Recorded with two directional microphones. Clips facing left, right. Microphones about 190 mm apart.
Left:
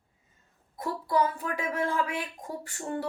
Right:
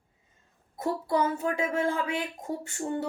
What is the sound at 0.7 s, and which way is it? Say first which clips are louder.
A woman's voice: right 1 dB; 25° right (ahead or behind).